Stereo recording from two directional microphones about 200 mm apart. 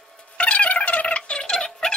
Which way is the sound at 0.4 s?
5° left (ahead or behind).